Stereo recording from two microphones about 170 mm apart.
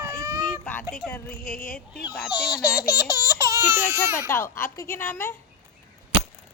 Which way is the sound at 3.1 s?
20° right (ahead or behind).